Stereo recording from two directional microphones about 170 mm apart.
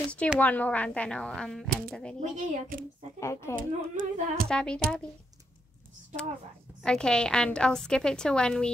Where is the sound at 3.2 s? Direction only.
15° left (ahead or behind).